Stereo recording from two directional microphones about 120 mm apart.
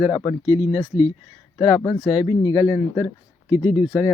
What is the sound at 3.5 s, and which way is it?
Speech, 15° right (ahead or behind).